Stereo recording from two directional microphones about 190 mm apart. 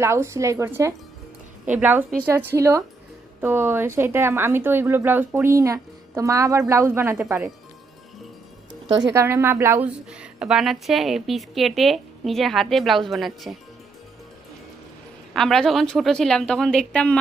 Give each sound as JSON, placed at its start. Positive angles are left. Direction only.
{"t": 0.0, "sound": "speech", "side_deg": -15}
{"t": 9.1, "sound": "a woman's voice", "side_deg": -15}
{"t": 15.3, "sound": "a woman's voice", "side_deg": 0}